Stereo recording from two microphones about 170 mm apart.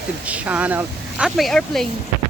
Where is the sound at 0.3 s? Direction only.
10° right (ahead or behind).